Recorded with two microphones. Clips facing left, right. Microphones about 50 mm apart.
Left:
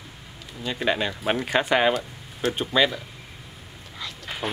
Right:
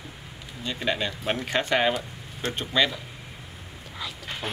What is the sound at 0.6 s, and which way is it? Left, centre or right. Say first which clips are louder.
Speech: left 3 dB; centre.